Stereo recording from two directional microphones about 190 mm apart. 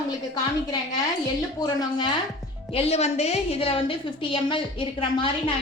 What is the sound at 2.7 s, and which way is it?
A woman's voice, 30° left (ahead or behind).